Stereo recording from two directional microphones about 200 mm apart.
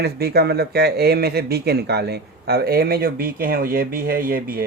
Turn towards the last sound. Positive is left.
turn(degrees=-45)  # may be behind; listen again after turning